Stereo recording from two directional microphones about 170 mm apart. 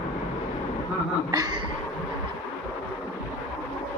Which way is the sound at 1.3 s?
25° right (ahead or behind).